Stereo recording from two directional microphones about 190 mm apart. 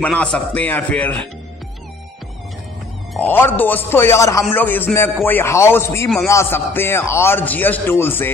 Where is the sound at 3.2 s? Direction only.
10° left (ahead or behind).